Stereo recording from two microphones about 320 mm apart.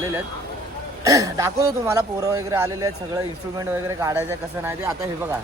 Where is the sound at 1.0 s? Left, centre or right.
Centre.